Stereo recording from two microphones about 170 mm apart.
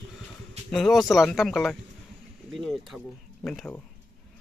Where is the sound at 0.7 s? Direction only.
Centre (ahead or behind).